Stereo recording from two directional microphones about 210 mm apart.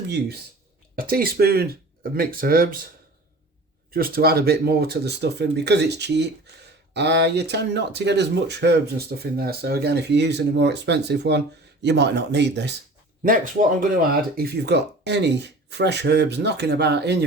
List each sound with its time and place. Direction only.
0.9 s speech: 45° right (ahead or behind)
3.9 s speech: 45° right (ahead or behind)
13.2 s speech: 40° right (ahead or behind)